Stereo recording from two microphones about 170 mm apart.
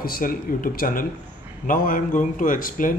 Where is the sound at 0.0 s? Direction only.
60° left (ahead or behind).